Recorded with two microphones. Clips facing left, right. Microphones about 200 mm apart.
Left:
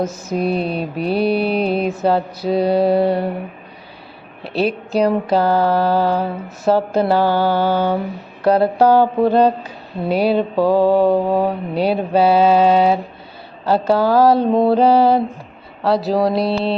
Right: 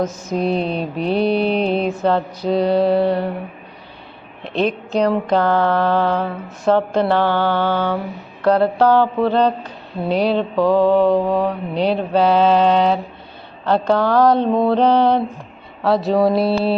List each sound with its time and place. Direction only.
0.0 s mantra: 10° left (ahead or behind)
4.4 s mantra: 5° left (ahead or behind)
14.7 s a sound: 5° left (ahead or behind)